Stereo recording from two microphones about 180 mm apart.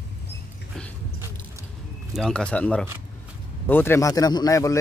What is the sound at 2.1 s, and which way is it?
Speech, 5° left (ahead or behind).